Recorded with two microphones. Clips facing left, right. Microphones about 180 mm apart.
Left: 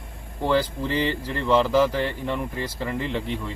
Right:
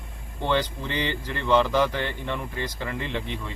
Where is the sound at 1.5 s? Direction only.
5° left (ahead or behind).